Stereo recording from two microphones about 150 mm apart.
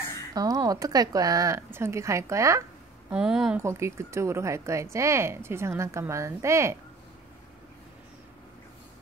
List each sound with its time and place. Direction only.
0.3 s speech: 25° right (ahead or behind)
3.1 s a woman's voice: 5° right (ahead or behind)
3.5 s speech: 20° right (ahead or behind)